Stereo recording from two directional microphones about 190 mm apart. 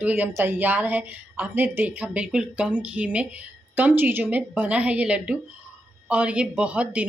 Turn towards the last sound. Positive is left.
turn(degrees=-5)  # may be behind; listen again after turning